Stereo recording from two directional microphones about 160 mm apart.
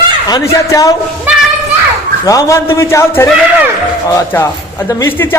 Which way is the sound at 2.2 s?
20° left (ahead or behind).